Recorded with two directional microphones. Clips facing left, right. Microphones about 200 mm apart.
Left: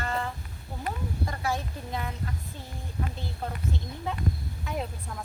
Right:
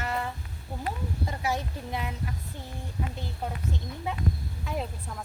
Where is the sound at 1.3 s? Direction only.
15° right (ahead or behind).